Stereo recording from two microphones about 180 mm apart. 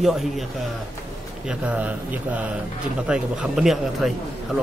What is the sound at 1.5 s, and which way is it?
A man's voice, 5° right (ahead or behind).